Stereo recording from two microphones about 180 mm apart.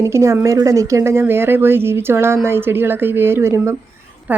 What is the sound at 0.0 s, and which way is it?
A woman's voice, 15° right (ahead or behind).